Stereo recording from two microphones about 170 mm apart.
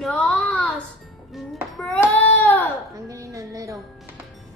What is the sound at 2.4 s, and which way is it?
Baby cry, 10° left (ahead or behind).